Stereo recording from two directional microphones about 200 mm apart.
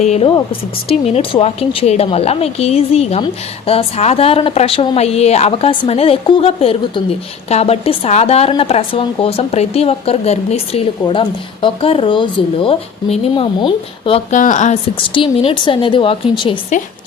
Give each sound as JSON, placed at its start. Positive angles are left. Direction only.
{"t": 0.0, "sound": "a woman's voice", "side_deg": 30}